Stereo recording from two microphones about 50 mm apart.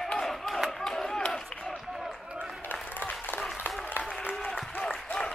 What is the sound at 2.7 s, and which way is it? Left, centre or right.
Applause, left.